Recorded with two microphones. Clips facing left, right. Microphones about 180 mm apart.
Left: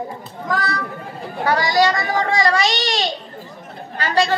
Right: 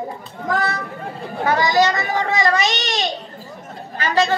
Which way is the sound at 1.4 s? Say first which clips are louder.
Even; 20° right (ahead or behind).